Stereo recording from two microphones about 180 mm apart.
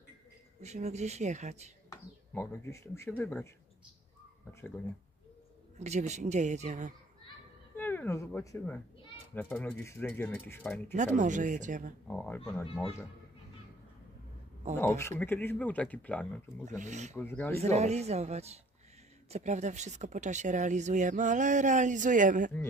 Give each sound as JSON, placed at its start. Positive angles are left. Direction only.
{"t": 0.6, "sound": "speech", "side_deg": -40}
{"t": 1.9, "sound": "speech", "side_deg": 15}
{"t": 5.8, "sound": "speech", "side_deg": -40}
{"t": 7.7, "sound": "speech", "side_deg": 10}
{"t": 11.0, "sound": "speech", "side_deg": -45}
{"t": 12.1, "sound": "speech", "side_deg": 10}
{"t": 14.8, "sound": "speech", "side_deg": 15}
{"t": 16.6, "sound": "speech", "side_deg": -45}
{"t": 17.1, "sound": "speech", "side_deg": 10}
{"t": 17.6, "sound": "speech", "side_deg": -35}